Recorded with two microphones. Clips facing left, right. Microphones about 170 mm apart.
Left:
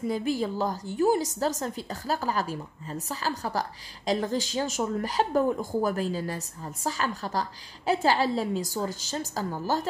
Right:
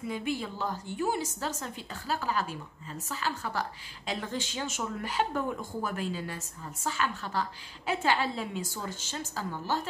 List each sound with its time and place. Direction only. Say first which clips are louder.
0.0 s a woman's voice: left 6 dB; 40° left (ahead or behind)